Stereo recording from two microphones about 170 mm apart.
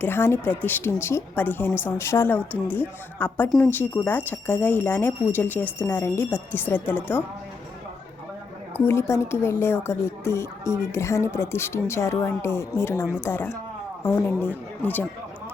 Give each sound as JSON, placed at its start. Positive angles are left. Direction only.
{"t": 0.0, "sound": "speech", "side_deg": 15}
{"t": 8.7, "sound": "speech", "side_deg": 15}